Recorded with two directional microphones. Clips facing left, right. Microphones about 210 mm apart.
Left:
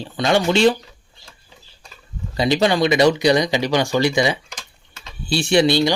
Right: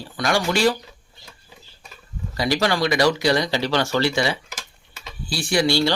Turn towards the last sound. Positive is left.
turn(degrees=20)  # may be behind; listen again after turning